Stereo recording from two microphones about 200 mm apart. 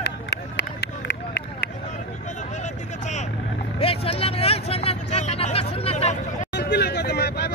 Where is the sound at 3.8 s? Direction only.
30° left (ahead or behind).